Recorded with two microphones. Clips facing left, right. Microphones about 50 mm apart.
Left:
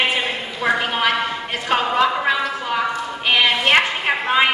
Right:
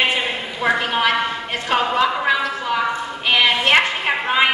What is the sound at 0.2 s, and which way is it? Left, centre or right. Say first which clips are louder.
A woman's voice: right 1 dB; centre.